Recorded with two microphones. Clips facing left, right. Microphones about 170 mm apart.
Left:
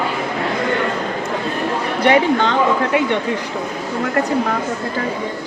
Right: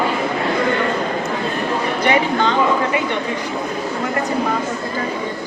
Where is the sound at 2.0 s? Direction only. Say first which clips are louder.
Left 4 dB; 65° left (ahead or behind).